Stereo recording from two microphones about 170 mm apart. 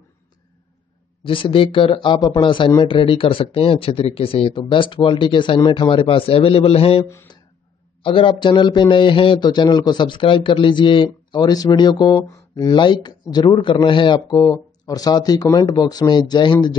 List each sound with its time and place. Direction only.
1.2 s speech: 30° left (ahead or behind)